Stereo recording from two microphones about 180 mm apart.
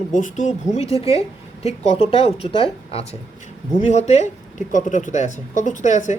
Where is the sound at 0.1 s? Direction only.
45° left (ahead or behind).